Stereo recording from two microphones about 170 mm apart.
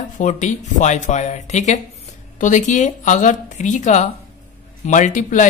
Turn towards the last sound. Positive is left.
turn(degrees=50)  # may be behind; listen again after turning